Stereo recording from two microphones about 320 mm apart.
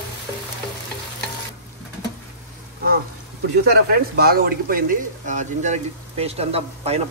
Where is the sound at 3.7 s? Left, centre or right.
Right.